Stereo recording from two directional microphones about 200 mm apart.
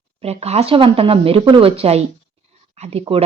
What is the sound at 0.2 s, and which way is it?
A woman's voice, 30° right (ahead or behind).